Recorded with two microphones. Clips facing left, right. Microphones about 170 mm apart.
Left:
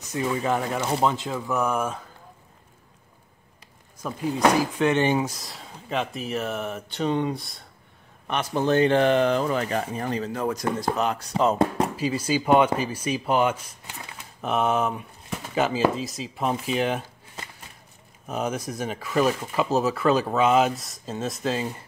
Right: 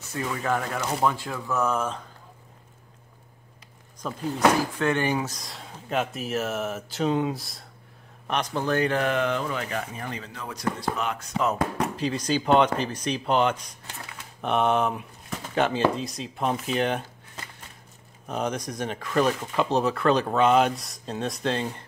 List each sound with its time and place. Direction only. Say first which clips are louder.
0.0 s speech: left 4 dB; 20° left (ahead or behind)
4.0 s speech: left 2 dB; 10° left (ahead or behind)
4.7 s speech: left 3 dB; 20° left (ahead or behind)
5.3 s speech: even; centre (ahead or behind)
8.5 s speech: left 6 dB; 25° left (ahead or behind)
12.0 s speech: left 1 dB; 5° left (ahead or behind)
18.2 s speech: left 1 dB; 5° left (ahead or behind)